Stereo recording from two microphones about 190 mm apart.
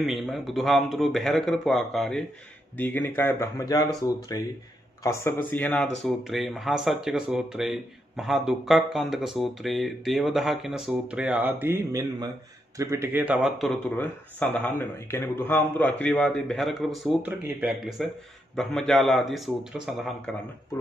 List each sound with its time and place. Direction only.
0.0 s speech: centre (ahead or behind)